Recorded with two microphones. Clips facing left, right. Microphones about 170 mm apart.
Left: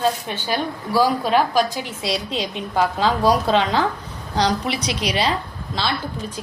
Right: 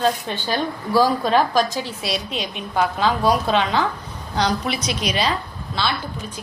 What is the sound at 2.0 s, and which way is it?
A woman's voice, 25° left (ahead or behind).